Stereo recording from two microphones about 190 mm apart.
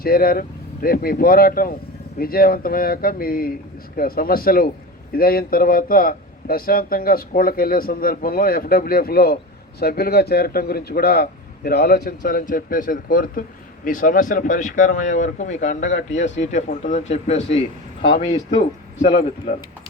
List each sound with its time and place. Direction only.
0.0 s a man's voice: 50° left (ahead or behind); by 19.5 s 30° left (ahead or behind)